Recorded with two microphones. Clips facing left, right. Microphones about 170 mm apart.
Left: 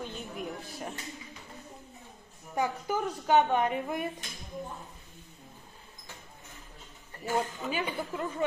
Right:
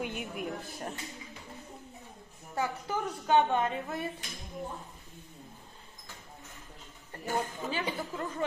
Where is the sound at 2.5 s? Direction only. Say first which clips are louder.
Left 3 dB; 15° left (ahead or behind).